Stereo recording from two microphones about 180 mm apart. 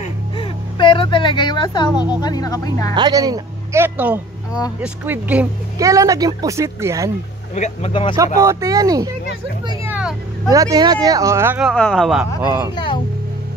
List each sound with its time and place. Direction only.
0.0 s a sound: 30° left (ahead or behind)
2.1 s speech: 20° left (ahead or behind)
2.9 s a woman's voice: 20° right (ahead or behind)
7.5 s speech: 40° left (ahead or behind)
7.9 s speech: 30° left (ahead or behind)
8.4 s a woman's voice: 15° right (ahead or behind)
9.8 s vehicle: 5° right (ahead or behind)
10.5 s a woman's voice: 20° right (ahead or behind)
11.7 s speech: 5° left (ahead or behind)
12.4 s speech: 10° right (ahead or behind)
12.7 s speech: 25° left (ahead or behind)